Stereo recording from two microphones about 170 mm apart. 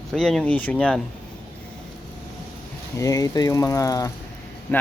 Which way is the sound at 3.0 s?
20° left (ahead or behind).